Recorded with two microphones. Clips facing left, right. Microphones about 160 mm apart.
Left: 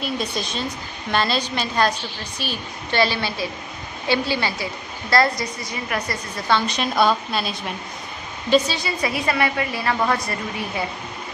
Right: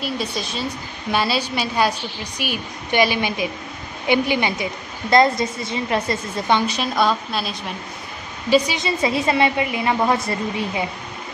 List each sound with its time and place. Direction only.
0.0 s a woman's voice: 5° right (ahead or behind); by 6.6 s 25° right (ahead or behind)
6.7 s speech: centre (ahead or behind)
8.5 s a woman's voice: 10° right (ahead or behind)